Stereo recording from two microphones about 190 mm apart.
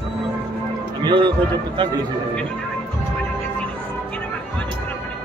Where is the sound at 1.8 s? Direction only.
25° right (ahead or behind).